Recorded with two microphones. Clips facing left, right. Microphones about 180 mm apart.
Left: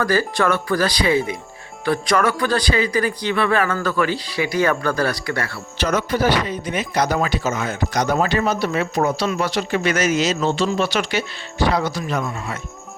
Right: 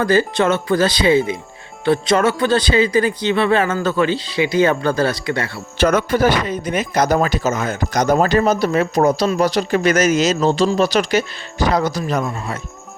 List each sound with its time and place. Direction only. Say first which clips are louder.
0.0 s speech: right 3 dB; 25° right (ahead or behind)
5.7 s speech: right 5 dB; 55° right (ahead or behind)